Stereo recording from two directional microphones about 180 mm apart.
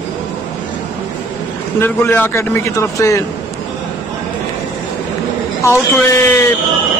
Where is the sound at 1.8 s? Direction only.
10° left (ahead or behind).